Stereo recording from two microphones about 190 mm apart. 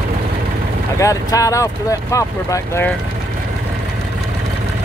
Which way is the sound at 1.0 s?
15° left (ahead or behind).